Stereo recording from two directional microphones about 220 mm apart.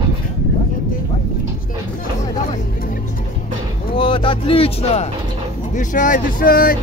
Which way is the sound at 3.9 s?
25° left (ahead or behind).